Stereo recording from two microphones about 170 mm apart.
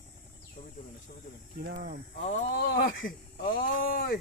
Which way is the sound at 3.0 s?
55° left (ahead or behind).